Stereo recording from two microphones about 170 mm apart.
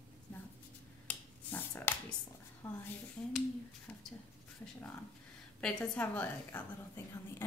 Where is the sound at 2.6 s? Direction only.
15° left (ahead or behind).